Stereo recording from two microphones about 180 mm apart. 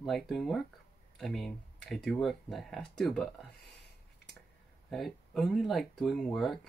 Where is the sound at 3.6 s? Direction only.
65° left (ahead or behind).